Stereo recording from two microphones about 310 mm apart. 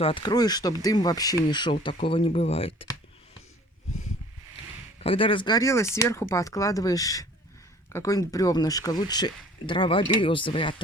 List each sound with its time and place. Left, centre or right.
0.0 s speech: centre
4.9 s speech: centre